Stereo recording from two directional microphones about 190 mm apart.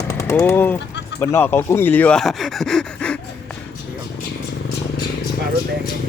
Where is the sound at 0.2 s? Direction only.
15° left (ahead or behind).